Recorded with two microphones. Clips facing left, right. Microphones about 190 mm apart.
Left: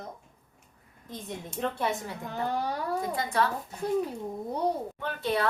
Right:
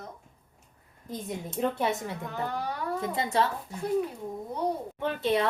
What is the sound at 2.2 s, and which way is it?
Speech, 35° left (ahead or behind).